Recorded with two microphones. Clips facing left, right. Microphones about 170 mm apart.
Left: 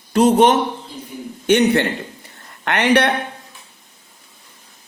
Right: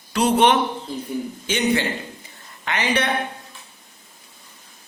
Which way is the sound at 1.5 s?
65° left (ahead or behind).